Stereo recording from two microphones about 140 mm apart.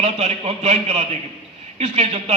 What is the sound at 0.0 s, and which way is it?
A man's voice, 50° right (ahead or behind).